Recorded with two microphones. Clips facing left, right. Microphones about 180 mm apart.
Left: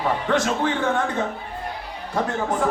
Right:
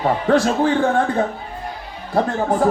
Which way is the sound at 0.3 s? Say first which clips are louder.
Right 7 dB; 35° right (ahead or behind).